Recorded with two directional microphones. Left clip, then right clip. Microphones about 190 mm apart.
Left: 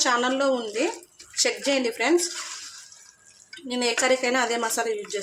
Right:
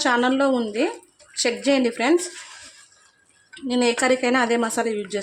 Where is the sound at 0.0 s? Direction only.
40° right (ahead or behind).